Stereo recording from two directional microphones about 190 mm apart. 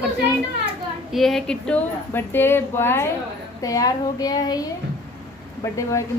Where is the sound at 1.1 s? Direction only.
Centre (ahead or behind); by 4.6 s 20° left (ahead or behind).